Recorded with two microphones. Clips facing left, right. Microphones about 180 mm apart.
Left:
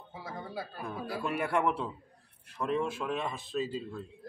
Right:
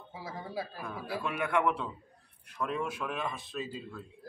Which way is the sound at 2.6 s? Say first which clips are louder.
Left 3 dB; 30° left (ahead or behind).